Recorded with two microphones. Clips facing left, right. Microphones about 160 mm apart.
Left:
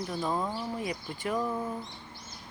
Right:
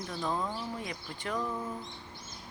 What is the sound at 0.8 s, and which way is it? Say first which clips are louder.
Speech: left 5 dB; 5° left (ahead or behind).